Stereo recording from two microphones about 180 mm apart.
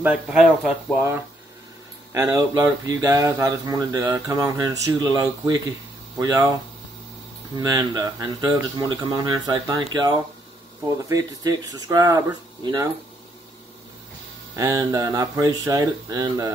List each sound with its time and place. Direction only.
0.0 s speech: 5° right (ahead or behind)
2.1 s speech: 20° right (ahead or behind)
7.5 s speech: 20° right (ahead or behind)
14.5 s speech: 20° right (ahead or behind)